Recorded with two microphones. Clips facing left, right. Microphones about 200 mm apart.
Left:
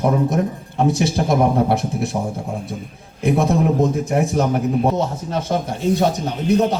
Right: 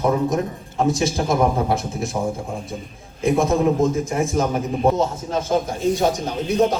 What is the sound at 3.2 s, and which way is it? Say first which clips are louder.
A man's voice: even; 65° left (ahead or behind).